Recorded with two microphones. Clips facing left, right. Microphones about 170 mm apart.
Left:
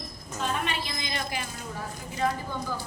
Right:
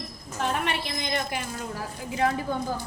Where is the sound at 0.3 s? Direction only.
70° right (ahead or behind).